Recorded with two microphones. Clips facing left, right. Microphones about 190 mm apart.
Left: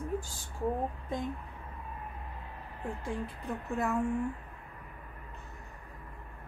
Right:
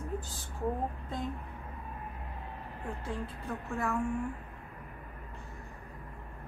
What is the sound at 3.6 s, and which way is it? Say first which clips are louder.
Speech: left 2 dB; 20° left (ahead or behind).